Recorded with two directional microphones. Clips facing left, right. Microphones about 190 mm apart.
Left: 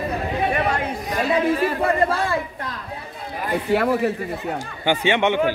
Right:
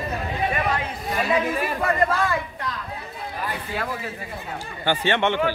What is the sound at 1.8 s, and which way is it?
Speech, 30° left (ahead or behind).